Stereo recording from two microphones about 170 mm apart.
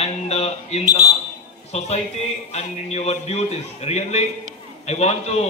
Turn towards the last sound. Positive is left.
turn(degrees=40)  # may be behind; listen again after turning